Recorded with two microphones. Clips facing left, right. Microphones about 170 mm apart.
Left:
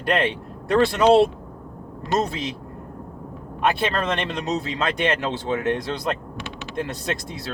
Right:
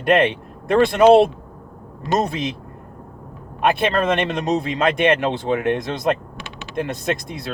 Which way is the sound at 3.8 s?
20° right (ahead or behind).